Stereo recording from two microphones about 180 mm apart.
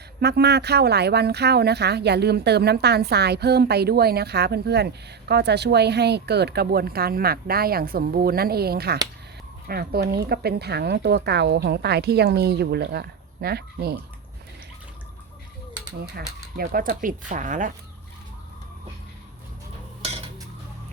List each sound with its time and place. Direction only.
0.2 s speech: 65° right (ahead or behind)
16.6 s speech: 50° right (ahead or behind)